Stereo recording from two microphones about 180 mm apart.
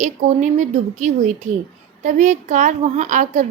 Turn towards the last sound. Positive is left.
turn(degrees=-45)  # may be behind; listen again after turning